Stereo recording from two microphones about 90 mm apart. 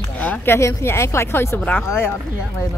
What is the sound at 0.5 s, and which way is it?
A woman's voice, 30° left (ahead or behind).